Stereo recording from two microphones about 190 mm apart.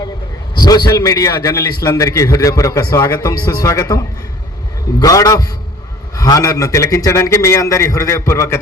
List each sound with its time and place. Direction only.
0.6 s a man's voice: 20° left (ahead or behind)